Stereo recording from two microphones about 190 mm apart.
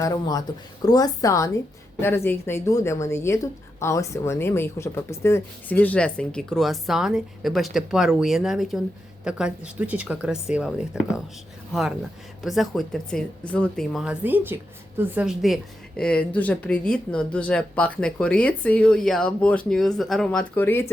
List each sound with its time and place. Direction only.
0.0 s a woman's voice: 20° left (ahead or behind)